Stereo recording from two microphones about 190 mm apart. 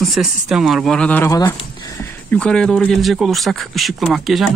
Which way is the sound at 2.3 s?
5° left (ahead or behind).